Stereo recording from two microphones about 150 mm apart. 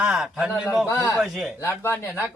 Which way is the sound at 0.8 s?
20° left (ahead or behind).